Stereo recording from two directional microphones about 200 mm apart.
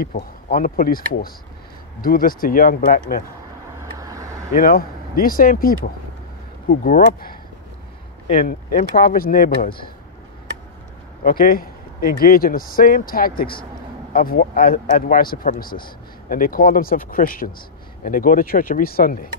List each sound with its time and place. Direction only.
0.0 s speech: 45° left (ahead or behind)
3.8 s vehicle: 15° right (ahead or behind)
4.6 s speech: 45° left (ahead or behind)
8.5 s speech: 45° left (ahead or behind)
11.2 s speech: 45° left (ahead or behind)